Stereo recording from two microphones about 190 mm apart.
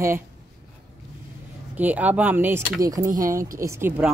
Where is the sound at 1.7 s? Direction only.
10° right (ahead or behind).